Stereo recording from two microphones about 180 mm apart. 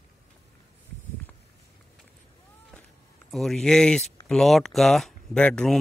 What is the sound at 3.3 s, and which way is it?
Speech, centre (ahead or behind).